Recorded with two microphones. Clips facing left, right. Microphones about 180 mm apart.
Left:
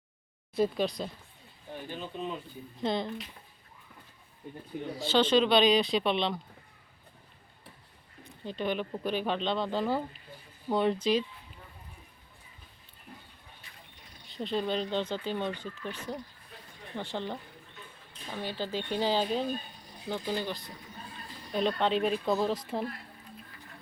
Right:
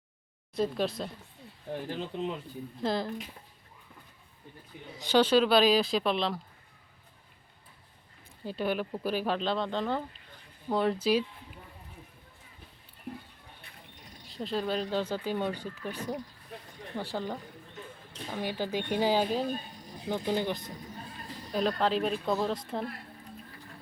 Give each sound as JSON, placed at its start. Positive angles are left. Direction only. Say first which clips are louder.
{"t": 0.5, "sound": "speech", "louder": "left 1 dB", "side_deg": 0}
{"t": 1.9, "sound": "speech", "louder": "right 2 dB", "side_deg": -90}
{"t": 2.8, "sound": "speech", "louder": "even", "side_deg": 0}
{"t": 4.9, "sound": "speech", "louder": "right 1 dB", "side_deg": -10}
{"t": 8.4, "sound": "speech", "louder": "right 1 dB", "side_deg": -5}
{"t": 14.3, "sound": "speech", "louder": "even", "side_deg": 0}
{"t": 18.3, "sound": "speech", "louder": "right 2 dB", "side_deg": -15}
{"t": 20.1, "sound": "speech", "louder": "right 3 dB", "side_deg": -20}
{"t": 21.5, "sound": "speech", "louder": "even", "side_deg": 0}